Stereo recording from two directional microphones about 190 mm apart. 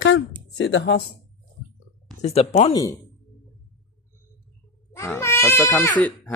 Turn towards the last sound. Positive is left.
turn(degrees=15)  # may be behind; listen again after turning